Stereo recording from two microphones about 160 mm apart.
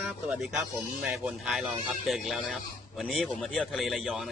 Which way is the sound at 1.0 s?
5° right (ahead or behind).